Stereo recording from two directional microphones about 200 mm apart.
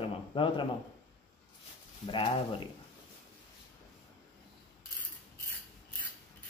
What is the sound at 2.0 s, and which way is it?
Speech, 25° left (ahead or behind).